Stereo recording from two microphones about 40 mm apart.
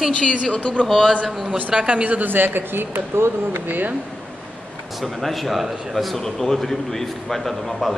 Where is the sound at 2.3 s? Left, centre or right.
Right.